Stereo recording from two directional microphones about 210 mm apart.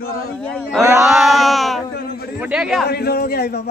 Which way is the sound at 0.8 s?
15° right (ahead or behind).